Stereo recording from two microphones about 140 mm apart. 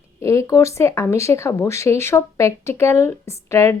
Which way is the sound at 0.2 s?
20° left (ahead or behind).